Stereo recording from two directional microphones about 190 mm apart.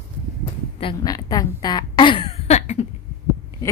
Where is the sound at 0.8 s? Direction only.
25° left (ahead or behind).